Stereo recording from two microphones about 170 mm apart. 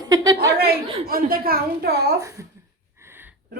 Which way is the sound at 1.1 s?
60° right (ahead or behind).